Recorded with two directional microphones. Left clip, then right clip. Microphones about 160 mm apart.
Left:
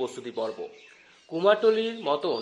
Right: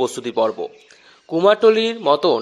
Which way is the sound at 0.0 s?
35° right (ahead or behind).